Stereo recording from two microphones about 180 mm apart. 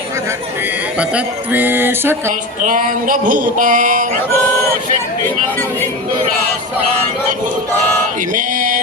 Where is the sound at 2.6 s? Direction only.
50° right (ahead or behind).